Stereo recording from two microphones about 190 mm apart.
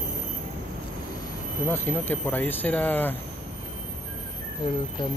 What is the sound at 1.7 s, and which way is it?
Speech, 10° left (ahead or behind).